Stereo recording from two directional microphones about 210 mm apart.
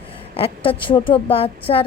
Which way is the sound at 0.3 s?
25° left (ahead or behind).